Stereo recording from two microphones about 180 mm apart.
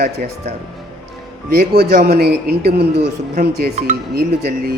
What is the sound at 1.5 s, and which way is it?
Speech, 55° right (ahead or behind).